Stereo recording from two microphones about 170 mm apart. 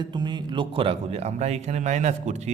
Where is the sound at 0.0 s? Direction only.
25° right (ahead or behind).